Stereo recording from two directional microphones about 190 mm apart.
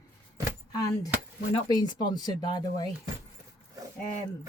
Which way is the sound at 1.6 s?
20° left (ahead or behind).